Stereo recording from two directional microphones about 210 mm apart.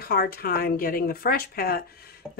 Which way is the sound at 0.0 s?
45° left (ahead or behind).